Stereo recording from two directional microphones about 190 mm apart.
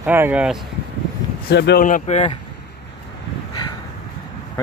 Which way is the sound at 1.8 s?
40° left (ahead or behind).